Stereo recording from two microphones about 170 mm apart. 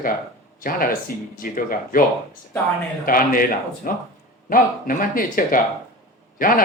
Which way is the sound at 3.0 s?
55° left (ahead or behind).